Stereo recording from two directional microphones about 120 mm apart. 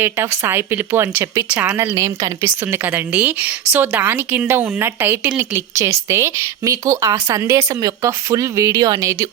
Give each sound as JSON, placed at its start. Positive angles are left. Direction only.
{"t": 0.0, "sound": "a woman's voice", "side_deg": -20}